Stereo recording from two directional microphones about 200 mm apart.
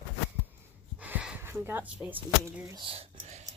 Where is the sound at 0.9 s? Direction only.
5° right (ahead or behind).